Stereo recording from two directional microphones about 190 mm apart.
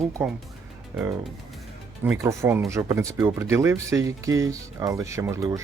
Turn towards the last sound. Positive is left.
turn(degrees=-15)  # may be behind; listen again after turning